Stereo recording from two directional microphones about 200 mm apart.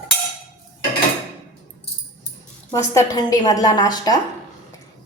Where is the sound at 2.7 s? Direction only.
15° left (ahead or behind).